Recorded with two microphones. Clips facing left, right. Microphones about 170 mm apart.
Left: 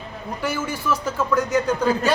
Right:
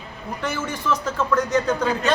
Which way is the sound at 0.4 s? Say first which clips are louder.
Left 1 dB; 10° left (ahead or behind).